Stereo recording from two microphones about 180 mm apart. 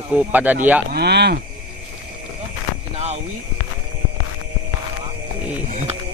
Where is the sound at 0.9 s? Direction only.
65° right (ahead or behind).